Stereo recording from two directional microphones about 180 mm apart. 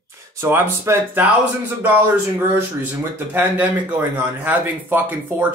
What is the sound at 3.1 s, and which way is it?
Speech, 10° right (ahead or behind).